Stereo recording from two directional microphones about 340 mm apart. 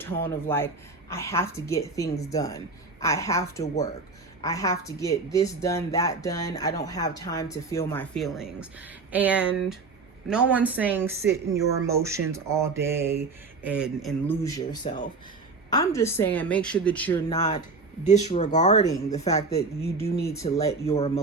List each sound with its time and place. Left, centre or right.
0.0 s a woman's voice: centre
17.3 s speech: centre